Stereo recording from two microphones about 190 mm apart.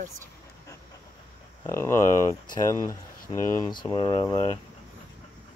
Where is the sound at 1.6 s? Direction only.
15° left (ahead or behind).